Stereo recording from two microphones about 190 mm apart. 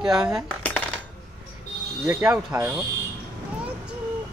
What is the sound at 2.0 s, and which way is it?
Speech, 10° right (ahead or behind).